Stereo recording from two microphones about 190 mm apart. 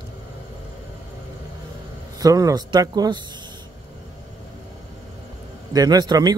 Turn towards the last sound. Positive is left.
turn(degrees=-20)  # may be behind; listen again after turning